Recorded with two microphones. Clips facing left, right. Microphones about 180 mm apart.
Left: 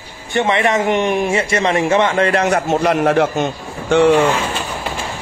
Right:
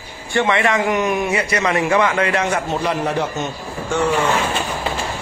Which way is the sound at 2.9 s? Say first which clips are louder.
Left 6 dB; 65° left (ahead or behind).